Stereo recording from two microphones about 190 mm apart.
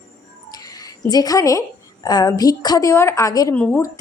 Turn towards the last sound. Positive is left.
turn(degrees=5)  # may be behind; listen again after turning